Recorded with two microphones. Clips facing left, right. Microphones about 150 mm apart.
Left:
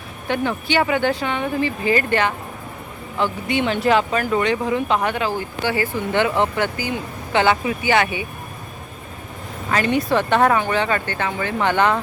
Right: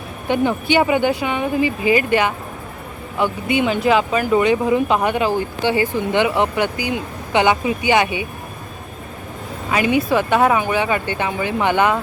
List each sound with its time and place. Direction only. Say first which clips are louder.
0.3 s speech: right 4 dB; 15° right (ahead or behind)
9.6 s a woman's voice: right 2 dB; 10° right (ahead or behind)